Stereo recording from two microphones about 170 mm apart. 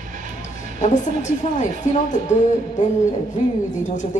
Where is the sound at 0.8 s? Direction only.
45° left (ahead or behind).